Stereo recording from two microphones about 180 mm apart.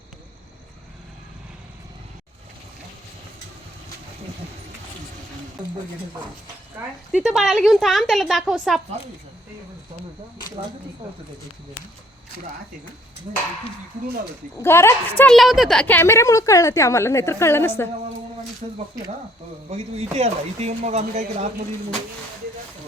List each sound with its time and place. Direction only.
6.7 s speech: 5° right (ahead or behind)
14.6 s a woman's voice: 15° left (ahead or behind)
15.2 s a woman's voice: centre (ahead or behind)
18.6 s speech: 35° right (ahead or behind)